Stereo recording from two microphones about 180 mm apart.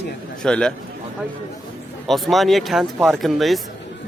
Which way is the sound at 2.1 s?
Centre (ahead or behind).